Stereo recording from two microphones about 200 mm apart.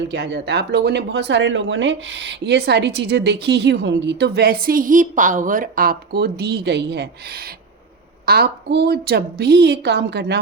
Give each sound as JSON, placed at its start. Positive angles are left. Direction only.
{"t": 0.1, "sound": "speech", "side_deg": -55}